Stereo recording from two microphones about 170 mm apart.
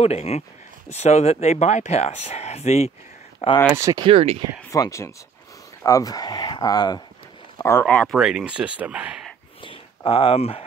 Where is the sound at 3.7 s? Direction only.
20° right (ahead or behind).